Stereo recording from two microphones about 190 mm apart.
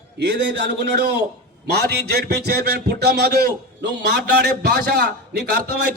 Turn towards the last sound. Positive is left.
turn(degrees=-60)  # may be behind; listen again after turning